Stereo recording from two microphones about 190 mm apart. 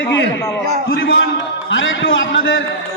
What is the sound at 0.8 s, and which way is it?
Speech, 55° left (ahead or behind).